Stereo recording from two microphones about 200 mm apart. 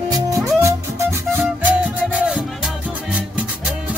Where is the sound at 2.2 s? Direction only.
5° right (ahead or behind).